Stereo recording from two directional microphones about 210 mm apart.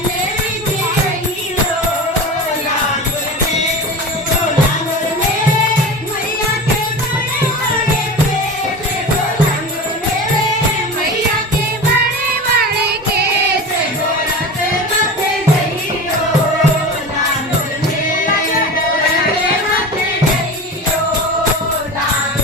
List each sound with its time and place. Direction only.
12.5 s music: 45° right (ahead or behind)